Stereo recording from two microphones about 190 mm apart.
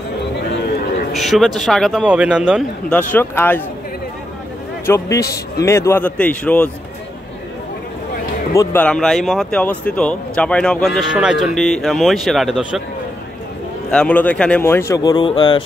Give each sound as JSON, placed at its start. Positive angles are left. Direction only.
{"t": 1.1, "sound": "speech", "side_deg": 0}
{"t": 2.9, "sound": "a man's voice", "side_deg": 10}
{"t": 4.8, "sound": "a man's voice", "side_deg": 15}
{"t": 8.5, "sound": "speech", "side_deg": 10}
{"t": 13.8, "sound": "a man's voice", "side_deg": 5}